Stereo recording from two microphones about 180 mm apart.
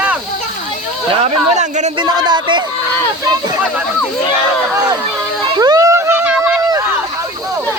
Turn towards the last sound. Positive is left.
turn(degrees=-15)  # may be behind; listen again after turning